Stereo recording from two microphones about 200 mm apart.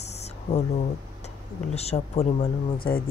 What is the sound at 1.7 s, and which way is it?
Speech, 30° left (ahead or behind).